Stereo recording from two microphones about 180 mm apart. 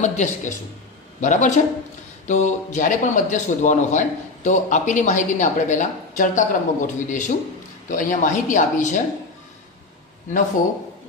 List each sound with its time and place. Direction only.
0.0 s a man's voice: 40° left (ahead or behind)